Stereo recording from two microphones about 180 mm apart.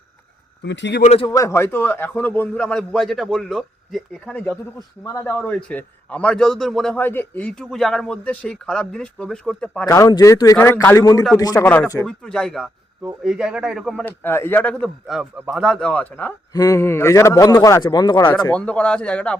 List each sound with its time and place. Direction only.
0.6 s speech: 75° left (ahead or behind)
1.0 s a man's voice: 35° left (ahead or behind)
1.3 s a man's voice: 15° left (ahead or behind)
9.8 s a man's voice: 20° left (ahead or behind); by 14.0 s centre (ahead or behind)
14.0 s a man's voice: 15° left (ahead or behind)
16.5 s a man's voice: 20° left (ahead or behind)
18.5 s a man's voice: 5° left (ahead or behind)